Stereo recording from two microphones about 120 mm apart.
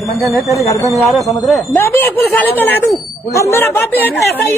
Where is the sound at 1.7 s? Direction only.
15° left (ahead or behind).